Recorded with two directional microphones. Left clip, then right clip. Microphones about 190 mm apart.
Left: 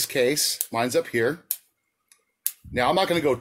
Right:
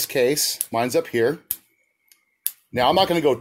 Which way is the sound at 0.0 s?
30° right (ahead or behind).